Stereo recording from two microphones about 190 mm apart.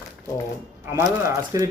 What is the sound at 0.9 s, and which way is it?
Speech, 15° right (ahead or behind).